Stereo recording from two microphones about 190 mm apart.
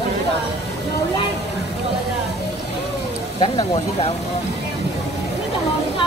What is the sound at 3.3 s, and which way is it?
Speech, 30° left (ahead or behind).